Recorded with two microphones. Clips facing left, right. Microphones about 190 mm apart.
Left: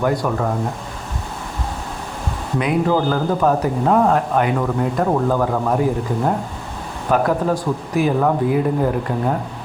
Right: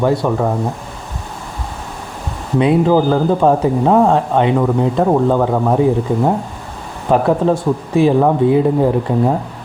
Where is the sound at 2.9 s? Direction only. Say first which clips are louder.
Right 5 dB; 20° right (ahead or behind).